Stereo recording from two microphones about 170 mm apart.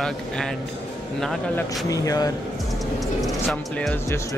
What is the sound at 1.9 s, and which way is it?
Speech, 20° left (ahead or behind).